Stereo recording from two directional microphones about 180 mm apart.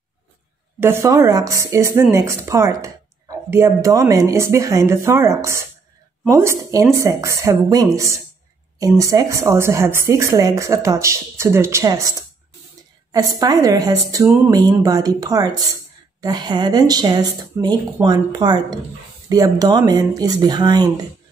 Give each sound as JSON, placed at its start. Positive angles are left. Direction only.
{"t": 0.7, "sound": "a woman's voice", "side_deg": -15}